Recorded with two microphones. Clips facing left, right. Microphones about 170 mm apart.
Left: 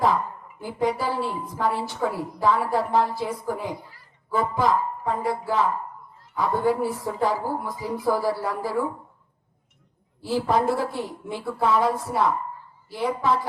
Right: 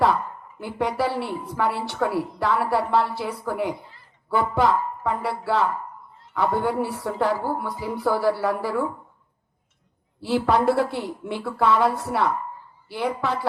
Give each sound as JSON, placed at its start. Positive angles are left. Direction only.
{"t": 0.9, "sound": "a woman's voice", "side_deg": -75}
{"t": 10.2, "sound": "a woman's voice", "side_deg": -75}